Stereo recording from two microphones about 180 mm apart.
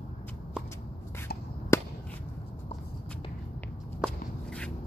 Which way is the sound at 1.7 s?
15° left (ahead or behind).